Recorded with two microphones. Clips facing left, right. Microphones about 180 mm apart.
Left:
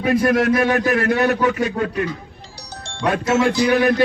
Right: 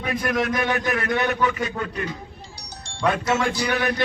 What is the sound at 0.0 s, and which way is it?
A man's voice, 50° left (ahead or behind).